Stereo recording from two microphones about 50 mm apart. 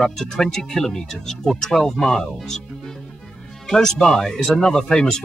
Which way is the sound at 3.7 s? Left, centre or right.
Centre.